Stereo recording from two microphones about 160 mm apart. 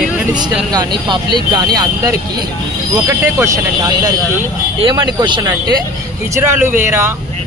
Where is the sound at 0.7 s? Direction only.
30° right (ahead or behind).